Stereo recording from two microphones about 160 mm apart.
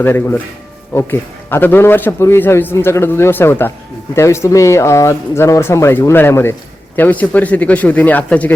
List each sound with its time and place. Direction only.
0.0 s speech: 15° left (ahead or behind)
1.5 s speech: 15° left (ahead or behind)